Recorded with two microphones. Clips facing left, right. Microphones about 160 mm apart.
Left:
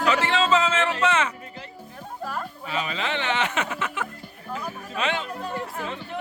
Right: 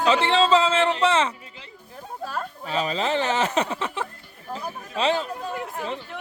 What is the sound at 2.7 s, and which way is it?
Speech, 35° right (ahead or behind).